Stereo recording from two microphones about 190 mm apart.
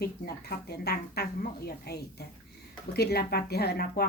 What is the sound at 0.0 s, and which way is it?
Speech, 55° left (ahead or behind).